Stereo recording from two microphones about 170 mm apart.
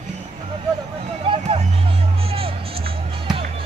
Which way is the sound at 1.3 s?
35° right (ahead or behind).